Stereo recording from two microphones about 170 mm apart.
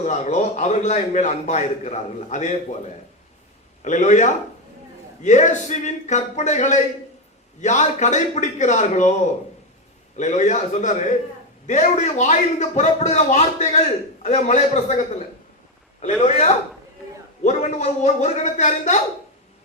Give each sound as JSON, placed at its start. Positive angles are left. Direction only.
{"t": 0.0, "sound": "a man's voice", "side_deg": 40}
{"t": 3.8, "sound": "a man's voice", "side_deg": 45}